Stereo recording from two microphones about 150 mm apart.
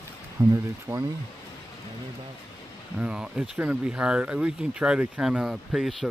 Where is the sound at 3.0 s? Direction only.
5° right (ahead or behind).